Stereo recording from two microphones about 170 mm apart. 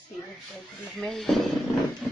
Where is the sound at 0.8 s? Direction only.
Centre (ahead or behind).